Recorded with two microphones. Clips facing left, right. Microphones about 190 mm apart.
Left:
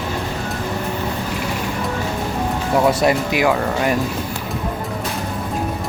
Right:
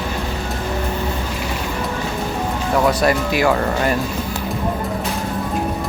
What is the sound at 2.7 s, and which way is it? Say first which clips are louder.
Speech: left 1 dB; 20° left (ahead or behind).